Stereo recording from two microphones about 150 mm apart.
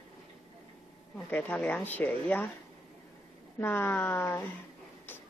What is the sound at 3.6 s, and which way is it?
Speech, 15° left (ahead or behind).